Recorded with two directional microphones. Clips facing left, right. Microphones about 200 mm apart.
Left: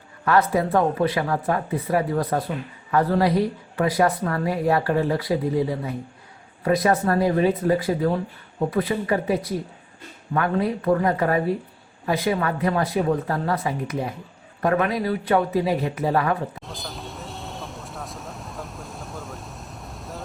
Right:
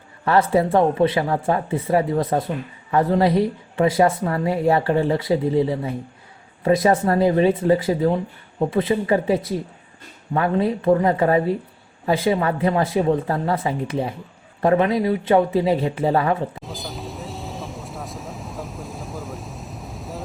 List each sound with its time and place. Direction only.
0.3 s speech: 30° right (ahead or behind)
16.6 s vehicle: centre (ahead or behind)